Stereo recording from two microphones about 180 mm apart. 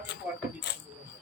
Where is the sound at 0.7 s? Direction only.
75° left (ahead or behind).